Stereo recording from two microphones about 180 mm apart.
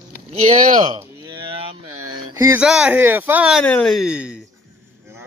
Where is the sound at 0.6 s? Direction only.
45° right (ahead or behind).